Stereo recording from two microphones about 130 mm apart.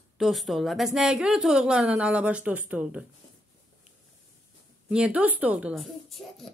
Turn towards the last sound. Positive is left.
turn(degrees=0)  # may be behind; listen again after turning